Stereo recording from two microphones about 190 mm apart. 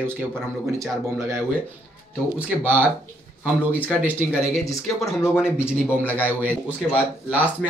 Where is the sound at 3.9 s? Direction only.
5° right (ahead or behind).